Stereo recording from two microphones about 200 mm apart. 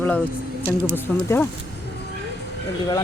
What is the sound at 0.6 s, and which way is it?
Speech, 15° right (ahead or behind).